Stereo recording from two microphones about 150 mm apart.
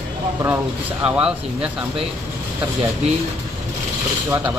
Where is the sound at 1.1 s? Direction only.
5° right (ahead or behind).